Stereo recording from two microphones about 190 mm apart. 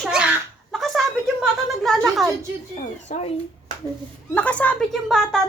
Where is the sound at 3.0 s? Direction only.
35° left (ahead or behind).